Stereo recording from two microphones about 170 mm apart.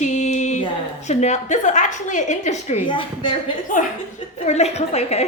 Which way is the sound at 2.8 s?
30° left (ahead or behind).